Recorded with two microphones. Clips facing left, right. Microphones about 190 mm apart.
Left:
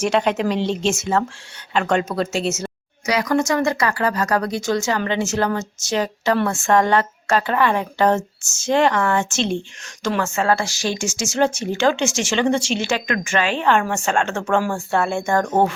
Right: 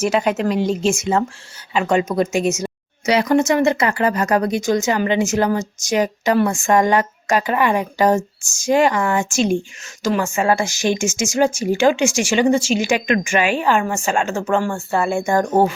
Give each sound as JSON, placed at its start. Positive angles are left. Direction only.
{"t": 0.0, "sound": "speech", "side_deg": -5}
{"t": 3.1, "sound": "speech", "side_deg": -25}